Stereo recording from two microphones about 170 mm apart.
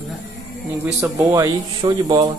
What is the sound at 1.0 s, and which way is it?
Speech, 20° right (ahead or behind).